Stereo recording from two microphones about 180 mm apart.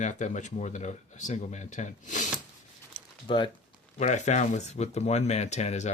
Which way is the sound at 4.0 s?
40° left (ahead or behind).